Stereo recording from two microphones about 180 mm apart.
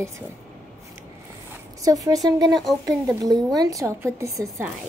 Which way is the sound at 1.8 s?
20° right (ahead or behind).